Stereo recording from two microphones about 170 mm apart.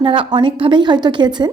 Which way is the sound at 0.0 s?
30° right (ahead or behind).